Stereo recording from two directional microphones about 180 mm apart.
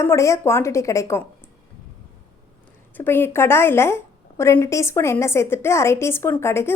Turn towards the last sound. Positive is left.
turn(degrees=15)  # may be behind; listen again after turning